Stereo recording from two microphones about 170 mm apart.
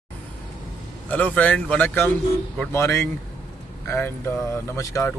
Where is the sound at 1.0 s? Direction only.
10° left (ahead or behind).